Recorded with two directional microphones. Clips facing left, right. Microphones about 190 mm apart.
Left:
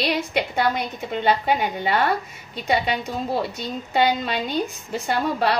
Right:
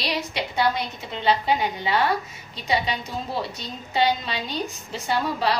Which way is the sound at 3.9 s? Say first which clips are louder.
Left 2 dB; 50° left (ahead or behind).